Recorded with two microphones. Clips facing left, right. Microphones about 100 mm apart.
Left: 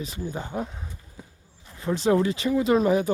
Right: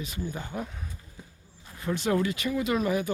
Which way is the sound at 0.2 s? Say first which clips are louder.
Left 3 dB; 30° left (ahead or behind).